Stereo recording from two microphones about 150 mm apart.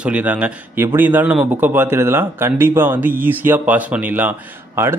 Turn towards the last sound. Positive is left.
turn(degrees=-15)  # may be behind; listen again after turning